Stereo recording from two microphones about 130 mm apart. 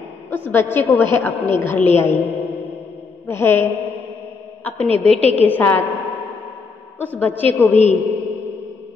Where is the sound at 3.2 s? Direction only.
20° left (ahead or behind).